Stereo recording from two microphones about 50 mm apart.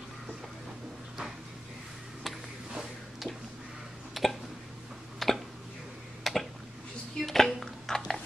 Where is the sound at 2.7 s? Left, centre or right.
Centre.